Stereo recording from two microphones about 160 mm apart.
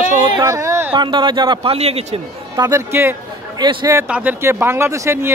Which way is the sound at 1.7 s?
40° right (ahead or behind).